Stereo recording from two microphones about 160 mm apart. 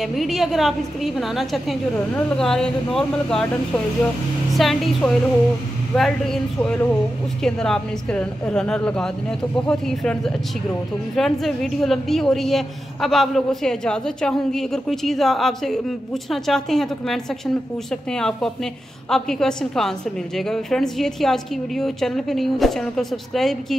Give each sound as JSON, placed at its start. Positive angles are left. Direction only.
{"t": 0.0, "sound": "a woman's voice", "side_deg": 0}